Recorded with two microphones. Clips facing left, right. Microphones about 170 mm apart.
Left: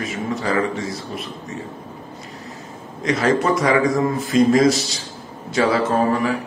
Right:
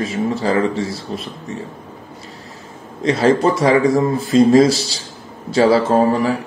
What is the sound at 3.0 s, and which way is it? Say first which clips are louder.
Speech: right 4 dB; 30° right (ahead or behind).